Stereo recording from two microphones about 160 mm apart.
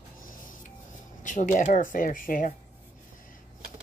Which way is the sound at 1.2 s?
55° left (ahead or behind).